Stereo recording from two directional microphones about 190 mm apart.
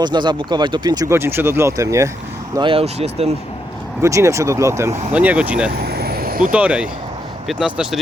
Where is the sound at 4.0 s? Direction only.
15° right (ahead or behind).